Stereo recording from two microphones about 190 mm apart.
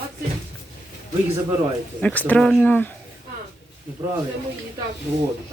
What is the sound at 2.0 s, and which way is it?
Speech, 5° left (ahead or behind).